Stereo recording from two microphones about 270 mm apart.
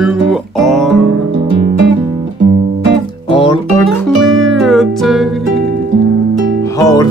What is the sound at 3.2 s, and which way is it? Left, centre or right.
Music, centre.